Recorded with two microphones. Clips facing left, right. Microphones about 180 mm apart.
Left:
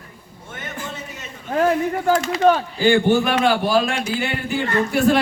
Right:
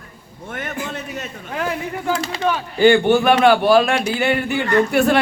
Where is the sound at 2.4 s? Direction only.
40° left (ahead or behind).